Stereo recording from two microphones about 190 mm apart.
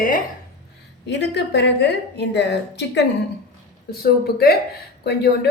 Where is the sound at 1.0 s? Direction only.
65° left (ahead or behind).